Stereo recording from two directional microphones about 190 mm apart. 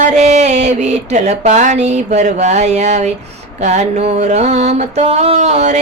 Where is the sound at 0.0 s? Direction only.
40° right (ahead or behind).